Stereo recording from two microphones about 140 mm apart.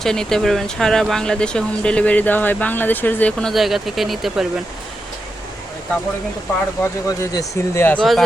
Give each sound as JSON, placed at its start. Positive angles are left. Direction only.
{"t": 0.0, "sound": "speech", "side_deg": 5}
{"t": 3.5, "sound": "speech", "side_deg": 0}
{"t": 6.8, "sound": "speech", "side_deg": 20}
{"t": 7.9, "sound": "speech", "side_deg": 0}